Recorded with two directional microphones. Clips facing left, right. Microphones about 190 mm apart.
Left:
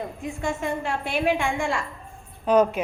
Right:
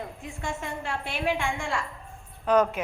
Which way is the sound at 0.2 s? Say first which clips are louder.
Left 9 dB; 15° left (ahead or behind).